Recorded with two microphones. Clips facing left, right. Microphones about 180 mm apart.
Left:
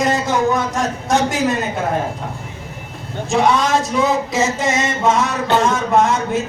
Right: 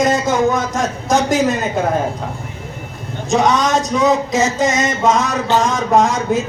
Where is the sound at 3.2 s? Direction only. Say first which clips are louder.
Right 1 dB; 40° right (ahead or behind).